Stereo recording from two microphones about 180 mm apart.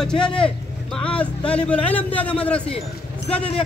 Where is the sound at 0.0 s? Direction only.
5° left (ahead or behind).